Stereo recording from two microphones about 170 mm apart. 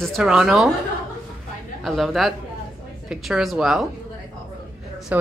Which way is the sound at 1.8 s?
Centre (ahead or behind).